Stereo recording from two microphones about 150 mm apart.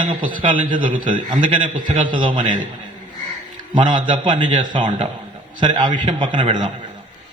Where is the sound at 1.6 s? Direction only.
60° right (ahead or behind).